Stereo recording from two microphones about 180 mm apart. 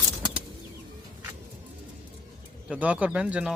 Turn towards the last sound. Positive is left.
turn(degrees=-5)  # may be behind; listen again after turning